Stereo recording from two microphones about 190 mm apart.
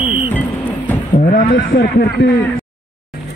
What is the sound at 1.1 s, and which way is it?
Speech, 45° left (ahead or behind).